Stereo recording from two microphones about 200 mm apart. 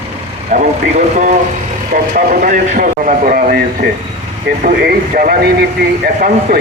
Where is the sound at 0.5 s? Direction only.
40° right (ahead or behind).